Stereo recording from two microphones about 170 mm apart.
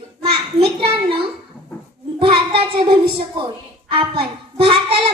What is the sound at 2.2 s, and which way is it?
A child's voice, 30° right (ahead or behind).